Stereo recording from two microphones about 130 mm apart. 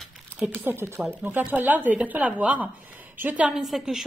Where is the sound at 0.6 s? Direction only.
15° right (ahead or behind).